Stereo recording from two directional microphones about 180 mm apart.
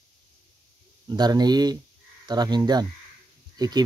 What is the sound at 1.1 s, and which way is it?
Speech, 20° right (ahead or behind).